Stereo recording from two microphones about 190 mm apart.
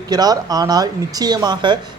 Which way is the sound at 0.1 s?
20° right (ahead or behind).